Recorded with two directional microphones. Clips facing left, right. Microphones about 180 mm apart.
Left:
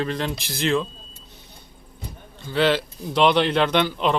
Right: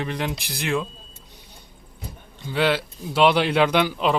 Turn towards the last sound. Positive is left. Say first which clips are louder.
# right 1 dB
turn(degrees=-5)  # may be behind; listen again after turning